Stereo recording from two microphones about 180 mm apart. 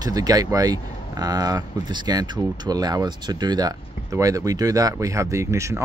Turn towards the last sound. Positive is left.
turn(degrees=-15)  # may be behind; listen again after turning